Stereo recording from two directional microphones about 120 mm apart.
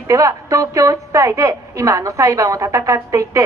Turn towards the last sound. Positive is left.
turn(degrees=-25)  # may be behind; listen again after turning